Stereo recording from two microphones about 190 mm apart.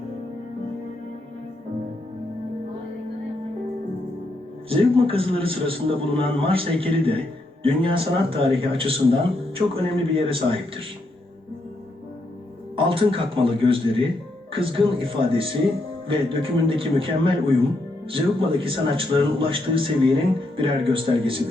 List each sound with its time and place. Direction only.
4.7 s a man's voice: 30° right (ahead or behind)
12.7 s a man's voice: 30° right (ahead or behind)